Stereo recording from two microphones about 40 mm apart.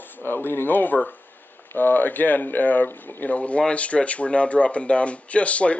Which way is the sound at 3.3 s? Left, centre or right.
Left.